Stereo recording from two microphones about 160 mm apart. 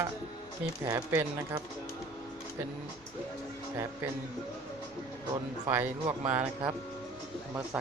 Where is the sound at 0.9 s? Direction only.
20° right (ahead or behind).